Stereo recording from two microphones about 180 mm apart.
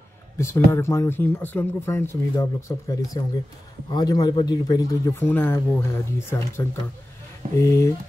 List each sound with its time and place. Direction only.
0.4 s speech: 15° left (ahead or behind)